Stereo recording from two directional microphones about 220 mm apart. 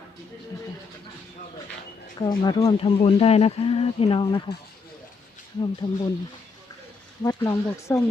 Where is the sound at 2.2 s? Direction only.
20° left (ahead or behind).